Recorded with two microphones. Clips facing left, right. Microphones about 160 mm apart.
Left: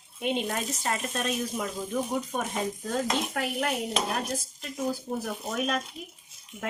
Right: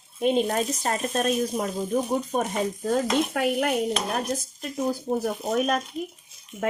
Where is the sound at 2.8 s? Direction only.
55° right (ahead or behind).